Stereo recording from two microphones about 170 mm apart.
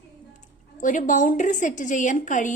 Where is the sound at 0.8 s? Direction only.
50° left (ahead or behind).